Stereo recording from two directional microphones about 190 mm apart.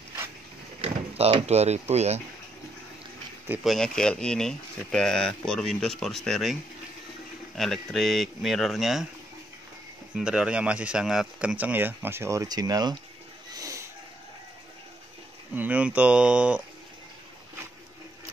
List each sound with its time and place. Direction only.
0.7 s speech: 30° right (ahead or behind)
3.4 s speech: 5° right (ahead or behind)
7.5 s speech: centre (ahead or behind)
10.1 s speech: 5° right (ahead or behind); by 12.9 s 20° right (ahead or behind)
13.5 s a sound: 20° right (ahead or behind)
15.5 s speech: 10° right (ahead or behind)